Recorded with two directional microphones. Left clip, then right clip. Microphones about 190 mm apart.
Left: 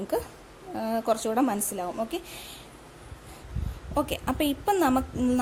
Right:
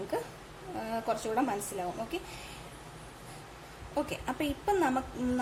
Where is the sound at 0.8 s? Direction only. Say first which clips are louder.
Left 7 dB; 45° left (ahead or behind).